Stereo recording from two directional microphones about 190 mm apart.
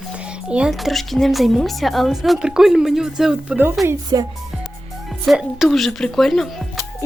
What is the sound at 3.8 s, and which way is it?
Speech, 20° right (ahead or behind).